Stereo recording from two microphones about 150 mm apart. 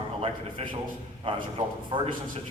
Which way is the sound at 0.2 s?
35° right (ahead or behind).